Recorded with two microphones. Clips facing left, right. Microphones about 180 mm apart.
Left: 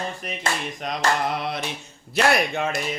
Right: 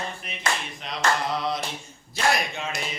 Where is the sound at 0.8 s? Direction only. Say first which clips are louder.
Left 2 dB; 45° left (ahead or behind).